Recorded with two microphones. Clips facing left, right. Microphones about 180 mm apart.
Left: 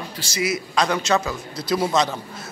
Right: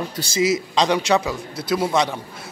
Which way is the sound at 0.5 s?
20° right (ahead or behind).